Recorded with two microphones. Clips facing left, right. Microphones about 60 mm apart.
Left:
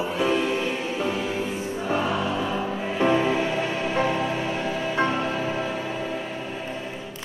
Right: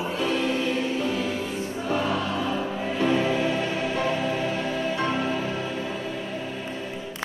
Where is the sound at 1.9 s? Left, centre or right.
Centre.